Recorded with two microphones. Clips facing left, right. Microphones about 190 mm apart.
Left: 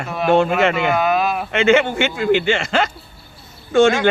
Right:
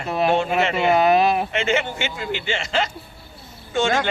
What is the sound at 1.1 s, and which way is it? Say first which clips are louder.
Speech: right 2 dB; 25° right (ahead or behind).